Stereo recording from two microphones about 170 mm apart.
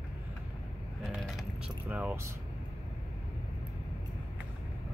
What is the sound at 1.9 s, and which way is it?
Speech, 10° right (ahead or behind).